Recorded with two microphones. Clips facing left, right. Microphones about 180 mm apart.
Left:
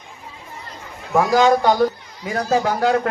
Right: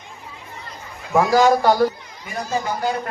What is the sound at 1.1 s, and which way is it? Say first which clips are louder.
Speech: even; 5° right (ahead or behind).